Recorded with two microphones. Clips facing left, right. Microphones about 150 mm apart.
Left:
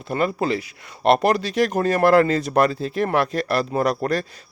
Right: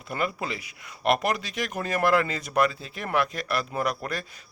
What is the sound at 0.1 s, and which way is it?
Speech, 35° left (ahead or behind).